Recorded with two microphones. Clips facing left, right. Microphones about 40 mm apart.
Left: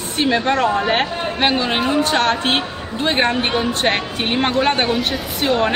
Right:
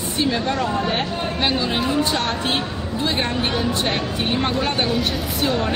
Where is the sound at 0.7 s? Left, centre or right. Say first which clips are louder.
Left 4 dB; left.